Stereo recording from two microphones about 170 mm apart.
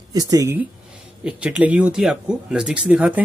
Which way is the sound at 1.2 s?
5° right (ahead or behind).